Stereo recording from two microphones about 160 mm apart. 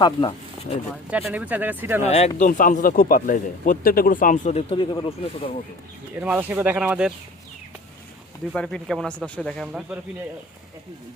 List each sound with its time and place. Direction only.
0.0 s speech: 30° left (ahead or behind)
0.7 s speech: 40° left (ahead or behind)
1.1 s speech: 10° right (ahead or behind)
2.0 s speech: 40° left (ahead or behind)
2.5 s speech: 55° left (ahead or behind)
4.5 s speech: 35° left (ahead or behind)
6.1 s speech: 10° right (ahead or behind)
8.5 s speech: 5° left (ahead or behind)